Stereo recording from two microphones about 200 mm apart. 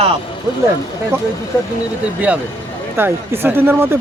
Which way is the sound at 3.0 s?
10° right (ahead or behind).